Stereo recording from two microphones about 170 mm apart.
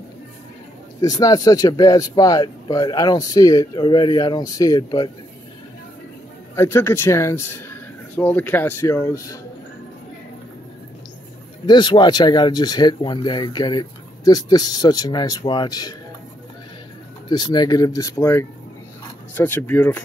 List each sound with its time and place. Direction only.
1.0 s speech: 20° left (ahead or behind)
6.5 s speech: 15° left (ahead or behind)
11.6 s speech: 25° left (ahead or behind)
17.3 s speech: 25° left (ahead or behind)